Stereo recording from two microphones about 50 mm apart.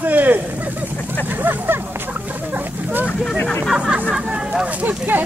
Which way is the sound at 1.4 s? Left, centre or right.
Right.